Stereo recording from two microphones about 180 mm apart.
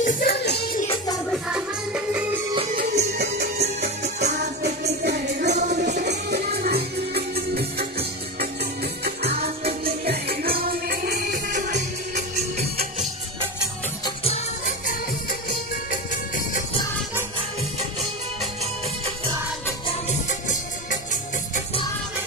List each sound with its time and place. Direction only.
0.0 s music: 50° left (ahead or behind)
3.0 s music: 60° right (ahead or behind)
9.7 s music: 60° right (ahead or behind); by 12.6 s 40° right (ahead or behind)
14.0 s music: 35° left (ahead or behind)
15.9 s music: 45° left (ahead or behind)
20.2 s music: 45° left (ahead or behind)